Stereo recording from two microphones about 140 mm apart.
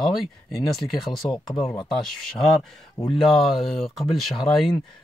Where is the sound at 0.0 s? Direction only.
Centre (ahead or behind).